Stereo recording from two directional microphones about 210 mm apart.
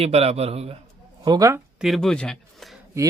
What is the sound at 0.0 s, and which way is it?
Speech, 30° right (ahead or behind).